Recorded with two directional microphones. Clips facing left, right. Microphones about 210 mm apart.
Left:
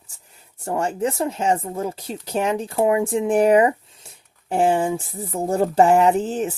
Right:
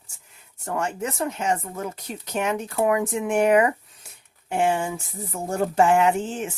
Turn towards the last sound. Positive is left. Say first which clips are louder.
# left 4 dB
turn(degrees=35)  # may be behind; listen again after turning